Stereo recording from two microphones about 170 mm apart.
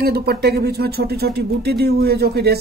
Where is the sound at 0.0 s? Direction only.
70° right (ahead or behind).